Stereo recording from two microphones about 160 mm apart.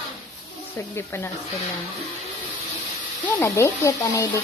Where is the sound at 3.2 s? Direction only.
15° left (ahead or behind).